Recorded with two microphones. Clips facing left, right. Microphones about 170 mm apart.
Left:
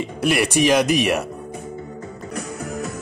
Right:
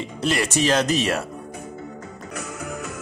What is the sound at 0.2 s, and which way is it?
Speech, 15° left (ahead or behind).